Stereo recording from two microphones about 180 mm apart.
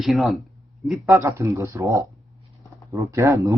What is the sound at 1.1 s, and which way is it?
Speech, 15° right (ahead or behind).